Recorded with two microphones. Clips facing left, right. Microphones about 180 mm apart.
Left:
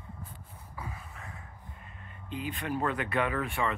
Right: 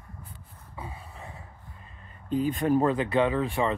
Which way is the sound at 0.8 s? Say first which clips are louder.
Right 3 dB; 30° right (ahead or behind).